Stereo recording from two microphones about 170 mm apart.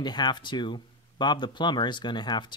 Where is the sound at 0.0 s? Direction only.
25° left (ahead or behind).